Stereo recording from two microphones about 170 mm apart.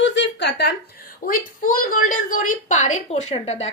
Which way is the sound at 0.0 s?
90° left.